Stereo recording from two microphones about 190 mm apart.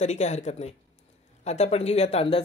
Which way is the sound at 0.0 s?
35° left (ahead or behind).